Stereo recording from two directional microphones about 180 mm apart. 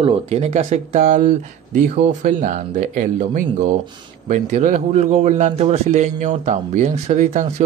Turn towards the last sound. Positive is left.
turn(degrees=-40)  # may be behind; listen again after turning